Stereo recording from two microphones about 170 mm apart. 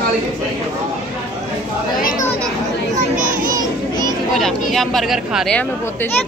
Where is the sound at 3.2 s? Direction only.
55° right (ahead or behind).